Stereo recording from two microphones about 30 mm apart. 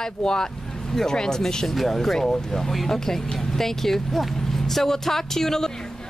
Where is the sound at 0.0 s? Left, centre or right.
Left.